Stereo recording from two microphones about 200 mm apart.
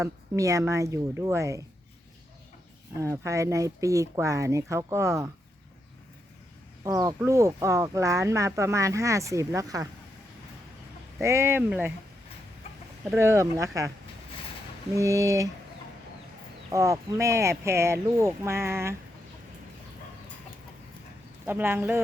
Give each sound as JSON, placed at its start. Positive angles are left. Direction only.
{"t": 0.0, "sound": "speech", "side_deg": -15}
{"t": 3.0, "sound": "speech", "side_deg": -15}
{"t": 6.8, "sound": "speech", "side_deg": -15}
{"t": 11.2, "sound": "speech", "side_deg": -15}
{"t": 13.1, "sound": "speech", "side_deg": -15}
{"t": 14.9, "sound": "speech", "side_deg": -15}
{"t": 16.7, "sound": "speech", "side_deg": -15}
{"t": 21.4, "sound": "speech", "side_deg": -10}